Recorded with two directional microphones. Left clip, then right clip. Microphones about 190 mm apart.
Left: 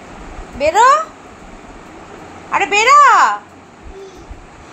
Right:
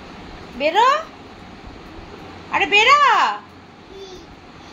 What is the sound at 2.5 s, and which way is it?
Speech, 20° left (ahead or behind).